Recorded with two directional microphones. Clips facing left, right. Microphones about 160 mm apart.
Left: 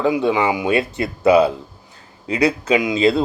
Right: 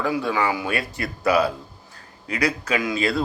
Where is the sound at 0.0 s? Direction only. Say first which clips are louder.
Left 6 dB; 20° left (ahead or behind).